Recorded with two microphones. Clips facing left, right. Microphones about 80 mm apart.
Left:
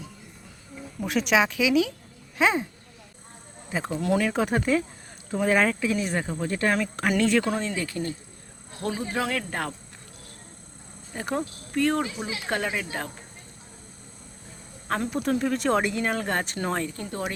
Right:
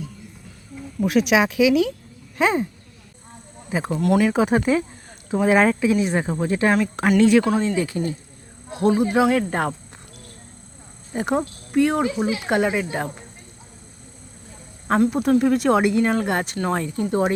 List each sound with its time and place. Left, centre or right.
1.0 s speech: centre
3.7 s speech: centre
7.8 s speech: centre
9.5 s speech: right
11.1 s speech: centre
12.0 s speech: right
12.5 s speech: centre
14.9 s speech: right
15.3 s speech: centre
17.1 s speech: right